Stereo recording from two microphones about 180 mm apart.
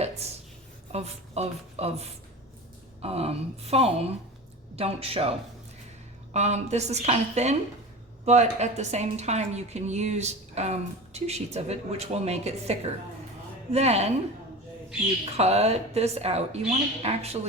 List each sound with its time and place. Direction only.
0.2 s a woman's voice: 35° right (ahead or behind)
6.3 s a woman's voice: 40° right (ahead or behind)
15.2 s a woman's voice: 35° right (ahead or behind)